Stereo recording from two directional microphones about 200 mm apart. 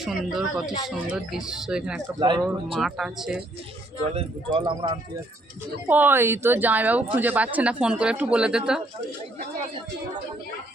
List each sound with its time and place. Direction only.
0.0 s speech: centre (ahead or behind)
2.1 s speech: 25° right (ahead or behind)
2.7 s speech: centre (ahead or behind)
4.0 s speech: 30° right (ahead or behind)
5.9 s speech: 10° right (ahead or behind)